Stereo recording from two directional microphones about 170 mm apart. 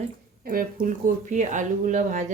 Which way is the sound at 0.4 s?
55° right (ahead or behind).